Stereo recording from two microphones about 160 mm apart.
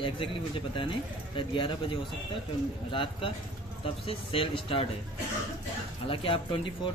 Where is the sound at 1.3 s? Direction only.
30° left (ahead or behind).